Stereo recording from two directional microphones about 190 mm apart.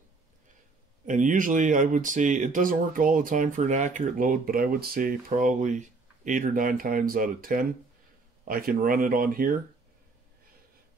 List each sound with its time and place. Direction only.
1.0 s speech: 40° right (ahead or behind)